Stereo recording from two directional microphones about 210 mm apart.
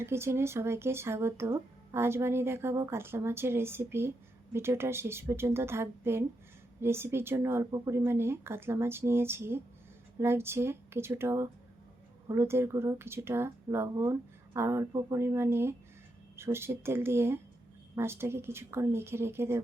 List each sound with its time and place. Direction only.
0.0 s speech: 10° right (ahead or behind)